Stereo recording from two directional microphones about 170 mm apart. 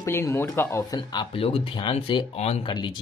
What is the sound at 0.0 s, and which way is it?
Speech, 15° left (ahead or behind).